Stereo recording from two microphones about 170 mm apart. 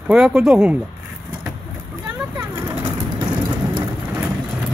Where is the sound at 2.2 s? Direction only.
15° right (ahead or behind).